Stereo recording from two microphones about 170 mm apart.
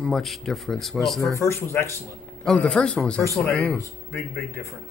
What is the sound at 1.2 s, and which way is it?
Speech, 15° left (ahead or behind).